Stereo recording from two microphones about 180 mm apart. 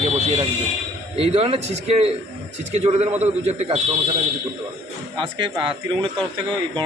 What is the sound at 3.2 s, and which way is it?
Speech, 35° right (ahead or behind).